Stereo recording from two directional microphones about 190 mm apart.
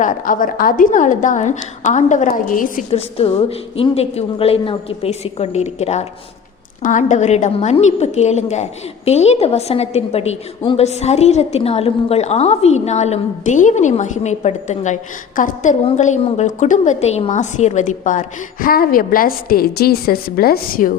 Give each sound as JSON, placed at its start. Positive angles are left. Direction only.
{"t": 0.0, "sound": "a woman's voice", "side_deg": 45}
{"t": 2.9, "sound": "a woman's voice", "side_deg": 30}